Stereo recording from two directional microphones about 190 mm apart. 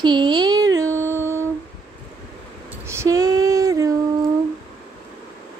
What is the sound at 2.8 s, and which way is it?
Female singing, 15° right (ahead or behind).